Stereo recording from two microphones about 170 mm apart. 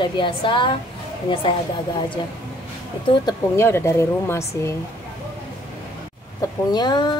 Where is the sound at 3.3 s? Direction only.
15° left (ahead or behind).